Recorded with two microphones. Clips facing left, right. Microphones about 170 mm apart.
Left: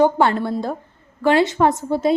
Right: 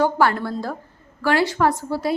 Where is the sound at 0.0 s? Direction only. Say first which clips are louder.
Left 3 dB; 20° left (ahead or behind).